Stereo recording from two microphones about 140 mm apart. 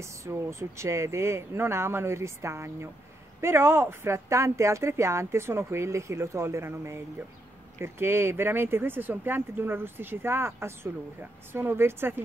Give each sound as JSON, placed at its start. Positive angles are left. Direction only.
{"t": 0.0, "sound": "speech", "side_deg": -20}